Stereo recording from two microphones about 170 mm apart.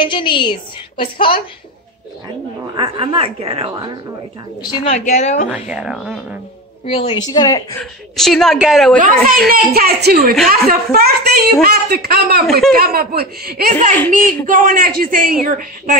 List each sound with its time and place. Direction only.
0.0 s a woman's voice: 30° left (ahead or behind)
2.7 s speech: 30° right (ahead or behind)
4.8 s a woman's voice: 40° left (ahead or behind)
5.5 s a woman's voice: 5° right (ahead or behind)
6.9 s a woman's voice: 30° left (ahead or behind)
7.8 s a woman's voice: centre (ahead or behind)
8.9 s a woman's voice: 50° right (ahead or behind)
9.5 s a woman's voice: 65° right (ahead or behind); by 16.0 s 50° right (ahead or behind)